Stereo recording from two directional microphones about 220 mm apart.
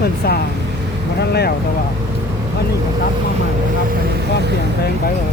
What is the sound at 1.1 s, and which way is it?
Speech, 45° left (ahead or behind).